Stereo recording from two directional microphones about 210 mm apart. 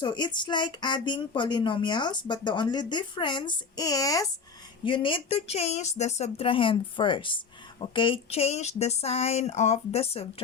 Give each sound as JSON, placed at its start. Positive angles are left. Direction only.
{"t": 0.0, "sound": "speech", "side_deg": 20}